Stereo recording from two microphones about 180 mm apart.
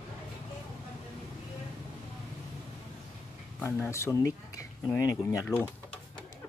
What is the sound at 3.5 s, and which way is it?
Speech, 10° left (ahead or behind).